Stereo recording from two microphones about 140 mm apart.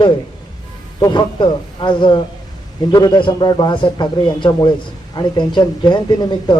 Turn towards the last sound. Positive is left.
turn(degrees=30)  # may be behind; listen again after turning